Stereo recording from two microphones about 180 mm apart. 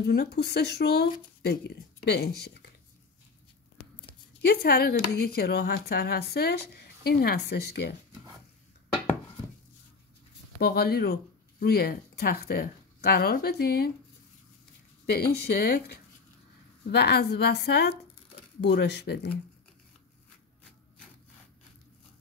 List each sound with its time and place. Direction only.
0.0 s speech: 60° left (ahead or behind)
4.4 s speech: 60° left (ahead or behind)
10.6 s speech: 60° left (ahead or behind)
15.0 s a woman's voice: 60° left (ahead or behind)